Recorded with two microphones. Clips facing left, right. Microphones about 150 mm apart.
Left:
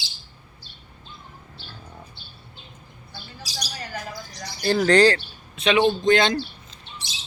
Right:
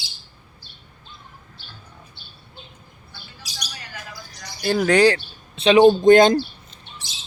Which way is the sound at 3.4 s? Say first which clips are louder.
Left 5 dB; 35° left (ahead or behind).